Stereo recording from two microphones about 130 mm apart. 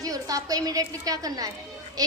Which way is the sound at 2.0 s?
30° right (ahead or behind).